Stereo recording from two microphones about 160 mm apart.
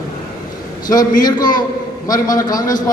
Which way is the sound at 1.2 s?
25° left (ahead or behind).